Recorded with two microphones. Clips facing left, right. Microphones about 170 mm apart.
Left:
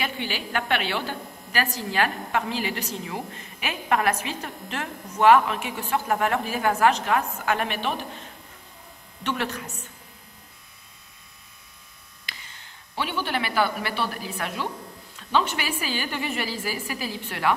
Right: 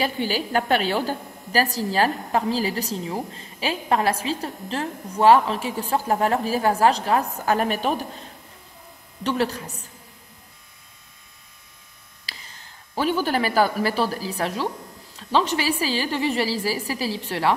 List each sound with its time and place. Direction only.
0.0 s a woman's voice: 40° right (ahead or behind)
12.3 s a woman's voice: 40° right (ahead or behind)